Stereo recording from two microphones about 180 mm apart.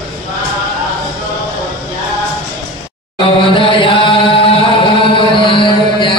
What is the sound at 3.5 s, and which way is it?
Chant, 30° left (ahead or behind).